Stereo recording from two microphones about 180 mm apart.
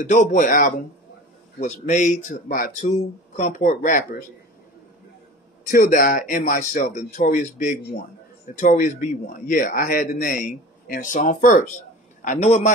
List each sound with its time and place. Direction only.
0.0 s a man's voice: 45° left (ahead or behind)
5.7 s a man's voice: 50° left (ahead or behind)